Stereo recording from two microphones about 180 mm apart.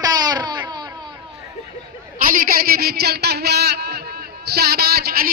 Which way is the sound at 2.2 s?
50° right (ahead or behind).